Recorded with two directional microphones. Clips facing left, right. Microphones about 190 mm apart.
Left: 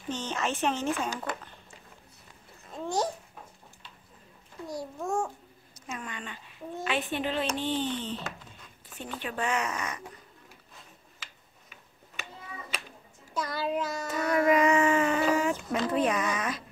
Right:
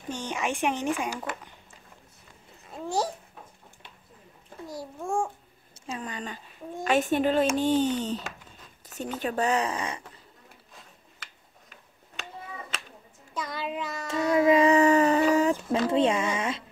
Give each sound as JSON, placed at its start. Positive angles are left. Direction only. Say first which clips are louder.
{"t": 0.1, "sound": "speech", "louder": "right 1 dB", "side_deg": -10}
{"t": 2.7, "sound": "speech", "louder": "right 1 dB", "side_deg": 0}
{"t": 4.6, "sound": "speech", "louder": "even", "side_deg": -5}
{"t": 5.8, "sound": "speech", "louder": "right 4 dB", "side_deg": -30}
{"t": 8.8, "sound": "a sound", "louder": "right 6 dB", "side_deg": -40}
{"t": 9.2, "sound": "speech", "louder": "right 5 dB", "side_deg": -40}
{"t": 13.4, "sound": "child singing", "louder": "left 2 dB", "side_deg": 0}
{"t": 14.0, "sound": "a sound", "louder": "right 4 dB", "side_deg": -25}
{"t": 15.9, "sound": "speech", "louder": "right 3 dB", "side_deg": -25}